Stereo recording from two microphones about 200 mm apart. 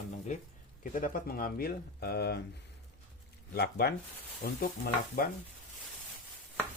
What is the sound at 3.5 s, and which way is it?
Speech, 50° left (ahead or behind).